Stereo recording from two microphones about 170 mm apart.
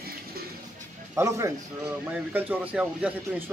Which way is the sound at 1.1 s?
15° right (ahead or behind).